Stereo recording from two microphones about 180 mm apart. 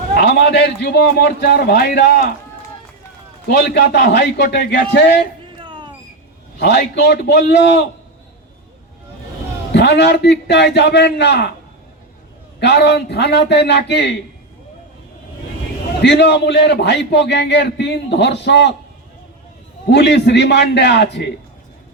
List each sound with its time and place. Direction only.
0.2 s a man's voice: 70° left (ahead or behind)
3.5 s a man's voice: 70° left (ahead or behind)
5.5 s a sound: 25° right (ahead or behind)
6.6 s a man's voice: 70° left (ahead or behind)
9.7 s a man's voice: 70° left (ahead or behind)
12.5 s a man's voice: 70° left (ahead or behind)
16.0 s a man's voice: 70° left (ahead or behind)
19.9 s a man's voice: 70° left (ahead or behind)